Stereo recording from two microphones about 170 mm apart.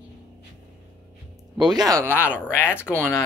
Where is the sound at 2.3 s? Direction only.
10° left (ahead or behind).